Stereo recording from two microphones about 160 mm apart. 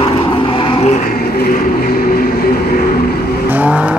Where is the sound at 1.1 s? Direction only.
75° left (ahead or behind).